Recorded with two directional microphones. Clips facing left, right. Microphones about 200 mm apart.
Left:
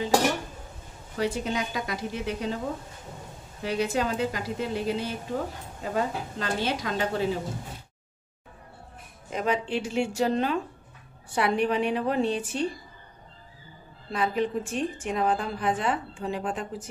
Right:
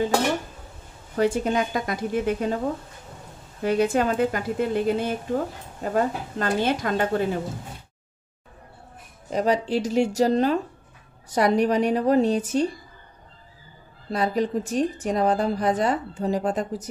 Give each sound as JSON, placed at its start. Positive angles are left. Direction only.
{"t": 1.1, "sound": "a woman's voice", "side_deg": -50}
{"t": 3.6, "sound": "a woman's voice", "side_deg": -50}
{"t": 9.3, "sound": "a woman's voice", "side_deg": -35}
{"t": 14.1, "sound": "a woman's voice", "side_deg": -40}